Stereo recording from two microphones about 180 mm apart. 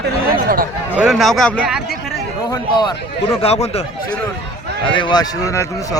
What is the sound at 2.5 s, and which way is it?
A man's voice, 25° left (ahead or behind).